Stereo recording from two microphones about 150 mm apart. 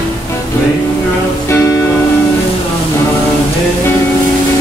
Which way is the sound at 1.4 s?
20° left (ahead or behind).